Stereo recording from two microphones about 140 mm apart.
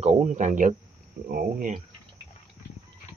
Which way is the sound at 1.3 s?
90° right.